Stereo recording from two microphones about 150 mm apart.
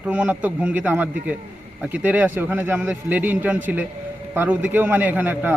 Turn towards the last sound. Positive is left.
turn(degrees=-15)  # may be behind; listen again after turning